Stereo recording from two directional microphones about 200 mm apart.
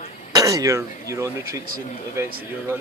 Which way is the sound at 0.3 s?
15° right (ahead or behind).